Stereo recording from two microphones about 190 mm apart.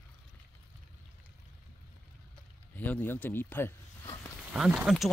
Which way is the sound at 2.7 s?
10° left (ahead or behind).